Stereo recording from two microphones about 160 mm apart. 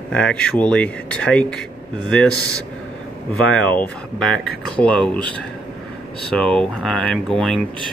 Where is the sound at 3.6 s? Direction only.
10° left (ahead or behind).